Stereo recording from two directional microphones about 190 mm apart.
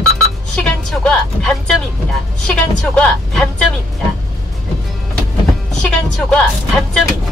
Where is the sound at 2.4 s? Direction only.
5° left (ahead or behind).